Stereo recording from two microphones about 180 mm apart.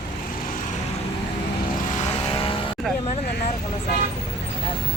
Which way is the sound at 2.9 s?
Centre (ahead or behind).